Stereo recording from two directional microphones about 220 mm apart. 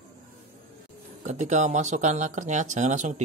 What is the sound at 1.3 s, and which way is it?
Speech, 35° right (ahead or behind).